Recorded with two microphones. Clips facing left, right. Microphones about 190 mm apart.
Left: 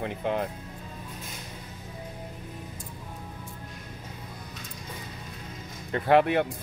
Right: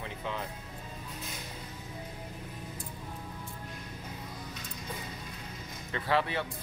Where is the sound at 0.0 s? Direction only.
55° left (ahead or behind).